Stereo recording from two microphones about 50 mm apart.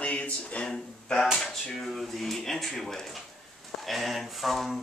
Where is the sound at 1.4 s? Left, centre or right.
Centre.